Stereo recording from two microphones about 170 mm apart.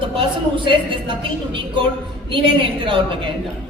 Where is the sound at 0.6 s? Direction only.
30° right (ahead or behind).